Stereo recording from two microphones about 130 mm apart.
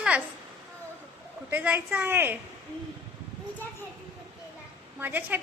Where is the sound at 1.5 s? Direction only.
15° right (ahead or behind).